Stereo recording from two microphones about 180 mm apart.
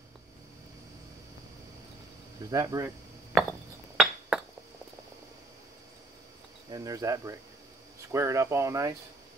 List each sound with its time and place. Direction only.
2.5 s cricket: 20° right (ahead or behind)
3.9 s chink: 5° right (ahead or behind)
6.7 s cricket: 20° right (ahead or behind)
8.1 s speech: 15° right (ahead or behind)